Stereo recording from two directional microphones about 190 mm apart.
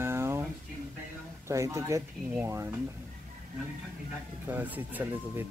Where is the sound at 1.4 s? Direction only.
15° right (ahead or behind).